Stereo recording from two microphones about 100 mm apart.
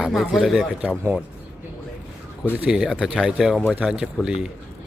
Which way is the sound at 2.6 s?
5° right (ahead or behind).